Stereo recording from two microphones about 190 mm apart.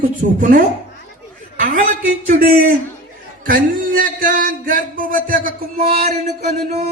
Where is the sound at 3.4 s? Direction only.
45° right (ahead or behind).